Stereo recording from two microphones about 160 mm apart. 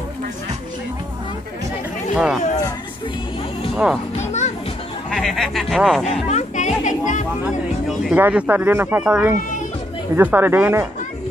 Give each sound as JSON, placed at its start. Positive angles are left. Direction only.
{"t": 2.1, "sound": "speech", "side_deg": -5}
{"t": 3.7, "sound": "a child's voice", "side_deg": 0}
{"t": 4.2, "sound": "children playing", "side_deg": 45}
{"t": 5.1, "sound": "speech", "side_deg": 0}
{"t": 6.0, "sound": "music", "side_deg": 45}
{"t": 8.0, "sound": "speech", "side_deg": -10}